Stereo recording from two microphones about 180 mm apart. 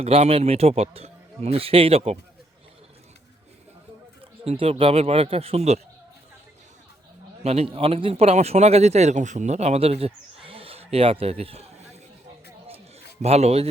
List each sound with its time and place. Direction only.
0.0 s a man's voice: 35° right (ahead or behind)
4.4 s a man's voice: 35° right (ahead or behind)
7.4 s speech: 35° right (ahead or behind)
13.2 s a man's voice: 35° right (ahead or behind)